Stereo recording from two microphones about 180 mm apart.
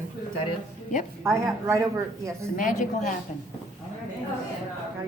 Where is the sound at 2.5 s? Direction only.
45° left (ahead or behind).